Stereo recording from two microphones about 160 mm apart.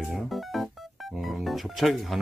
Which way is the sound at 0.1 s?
Centre (ahead or behind).